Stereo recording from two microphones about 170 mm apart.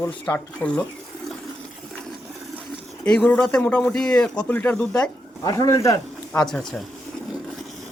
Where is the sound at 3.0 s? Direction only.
5° left (ahead or behind).